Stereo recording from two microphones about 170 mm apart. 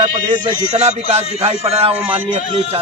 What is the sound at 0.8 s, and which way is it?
A man's voice, 40° right (ahead or behind).